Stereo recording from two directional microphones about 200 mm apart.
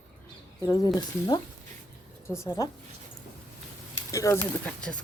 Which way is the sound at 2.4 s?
15° left (ahead or behind).